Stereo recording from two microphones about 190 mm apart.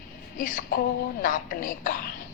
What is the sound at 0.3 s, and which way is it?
A woman's voice, 45° left (ahead or behind).